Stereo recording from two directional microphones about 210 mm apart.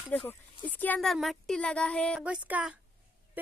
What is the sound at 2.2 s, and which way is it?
Speech, 5° right (ahead or behind).